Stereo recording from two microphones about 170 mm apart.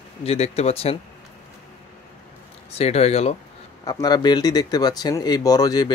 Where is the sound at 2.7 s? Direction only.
40° left (ahead or behind).